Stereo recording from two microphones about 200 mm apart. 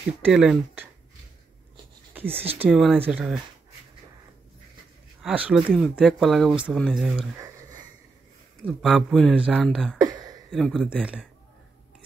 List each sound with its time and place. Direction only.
0.2 s speech: 5° right (ahead or behind)
2.1 s a sound: 10° right (ahead or behind)
2.6 s speech: centre (ahead or behind)
5.2 s speech: 5° right (ahead or behind)
8.6 s speech: 5° right (ahead or behind)
10.0 s a sound: 20° right (ahead or behind)
10.5 s speech: centre (ahead or behind)